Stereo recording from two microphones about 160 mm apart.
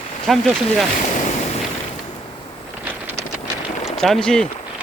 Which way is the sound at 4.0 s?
5° left (ahead or behind).